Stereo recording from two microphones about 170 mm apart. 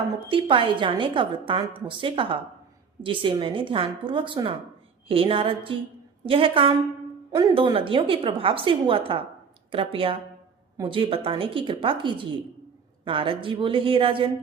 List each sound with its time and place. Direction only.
0.3 s a woman's voice: 30° right (ahead or behind)